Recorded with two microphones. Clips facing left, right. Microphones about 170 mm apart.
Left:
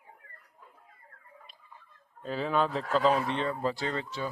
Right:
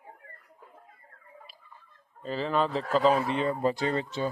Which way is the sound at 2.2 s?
Centre (ahead or behind).